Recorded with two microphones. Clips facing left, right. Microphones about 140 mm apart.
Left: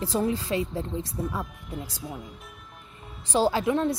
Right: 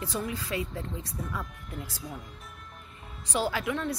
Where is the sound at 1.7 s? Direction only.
10° left (ahead or behind).